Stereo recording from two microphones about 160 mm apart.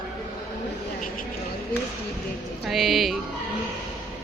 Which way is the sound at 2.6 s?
Centre (ahead or behind).